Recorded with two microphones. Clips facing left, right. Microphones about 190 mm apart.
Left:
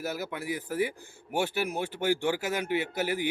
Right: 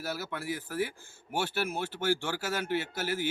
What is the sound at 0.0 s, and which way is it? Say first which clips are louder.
A man's voice: left 2 dB; 15° left (ahead or behind).